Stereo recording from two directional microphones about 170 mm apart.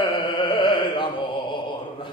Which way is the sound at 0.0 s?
30° left (ahead or behind).